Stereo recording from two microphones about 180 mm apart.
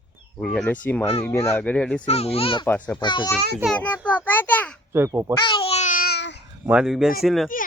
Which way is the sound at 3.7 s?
10° left (ahead or behind).